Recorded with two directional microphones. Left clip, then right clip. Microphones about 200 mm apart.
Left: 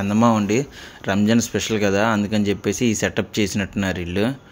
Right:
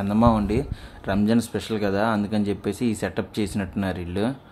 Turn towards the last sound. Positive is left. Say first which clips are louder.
# left 4 dB
turn(degrees=5)  # may be behind; listen again after turning